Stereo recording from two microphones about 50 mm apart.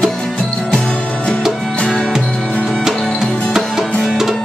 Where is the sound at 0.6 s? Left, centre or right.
Centre.